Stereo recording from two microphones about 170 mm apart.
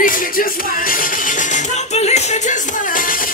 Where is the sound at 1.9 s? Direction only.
40° left (ahead or behind).